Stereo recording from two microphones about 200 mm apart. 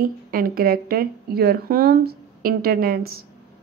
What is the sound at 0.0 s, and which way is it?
Speech, 45° right (ahead or behind).